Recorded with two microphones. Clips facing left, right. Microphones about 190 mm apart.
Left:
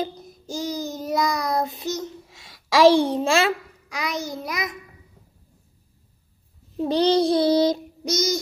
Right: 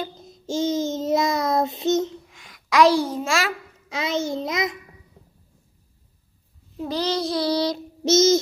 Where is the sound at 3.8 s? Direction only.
25° right (ahead or behind).